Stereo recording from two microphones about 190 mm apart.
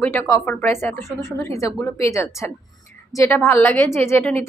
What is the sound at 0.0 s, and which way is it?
A woman's voice, 10° left (ahead or behind).